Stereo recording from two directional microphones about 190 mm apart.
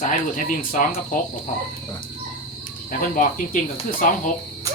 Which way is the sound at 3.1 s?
45° left (ahead or behind).